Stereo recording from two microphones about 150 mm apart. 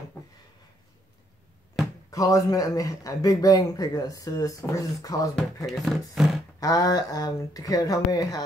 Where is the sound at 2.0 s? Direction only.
20° left (ahead or behind).